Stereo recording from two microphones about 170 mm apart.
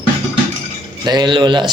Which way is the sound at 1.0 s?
25° right (ahead or behind).